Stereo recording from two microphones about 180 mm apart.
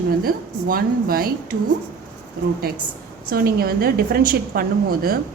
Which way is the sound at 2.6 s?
55° right (ahead or behind).